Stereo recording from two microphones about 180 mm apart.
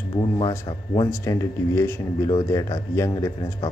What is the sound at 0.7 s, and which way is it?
A man's voice, 20° left (ahead or behind).